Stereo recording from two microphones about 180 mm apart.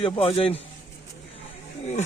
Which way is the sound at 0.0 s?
30° left (ahead or behind).